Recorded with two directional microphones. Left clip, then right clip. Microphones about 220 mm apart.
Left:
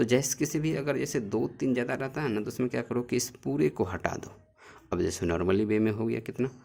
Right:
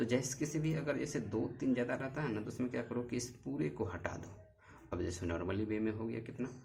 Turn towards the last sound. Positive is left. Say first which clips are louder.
# left 11 dB
turn(degrees=50)  # may be behind; listen again after turning